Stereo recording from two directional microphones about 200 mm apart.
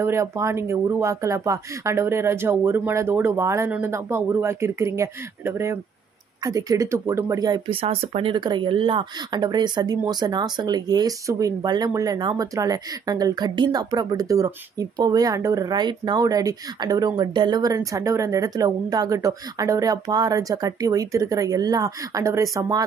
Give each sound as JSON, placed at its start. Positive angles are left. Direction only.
{"t": 0.0, "sound": "speech", "side_deg": -15}